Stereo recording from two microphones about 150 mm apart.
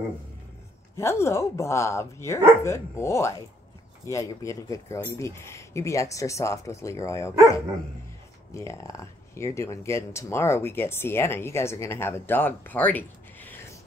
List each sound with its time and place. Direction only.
0.9 s speech: 20° left (ahead or behind)
8.5 s speech: 20° left (ahead or behind)